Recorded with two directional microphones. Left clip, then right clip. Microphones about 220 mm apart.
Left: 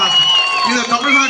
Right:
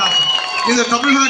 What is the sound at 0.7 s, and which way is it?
Speech, 50° left (ahead or behind).